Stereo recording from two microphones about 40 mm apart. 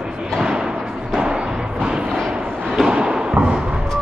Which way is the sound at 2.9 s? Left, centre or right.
Right.